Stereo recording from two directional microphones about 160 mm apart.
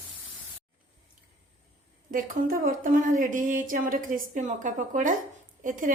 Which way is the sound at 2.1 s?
60° right (ahead or behind).